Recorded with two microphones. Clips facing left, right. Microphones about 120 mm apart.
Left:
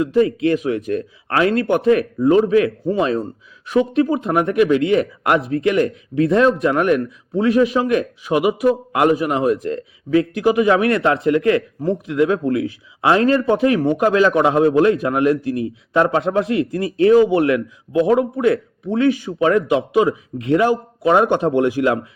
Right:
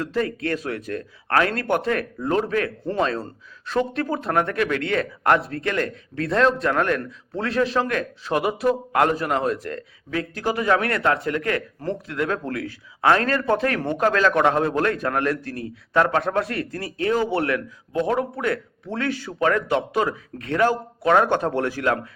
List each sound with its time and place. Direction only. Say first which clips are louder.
0.0 s a man's voice: left 9 dB; 15° left (ahead or behind)